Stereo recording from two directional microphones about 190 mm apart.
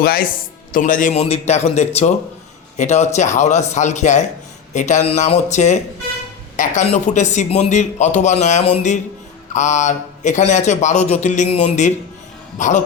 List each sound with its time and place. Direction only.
0.0 s a man's voice: 50° left (ahead or behind)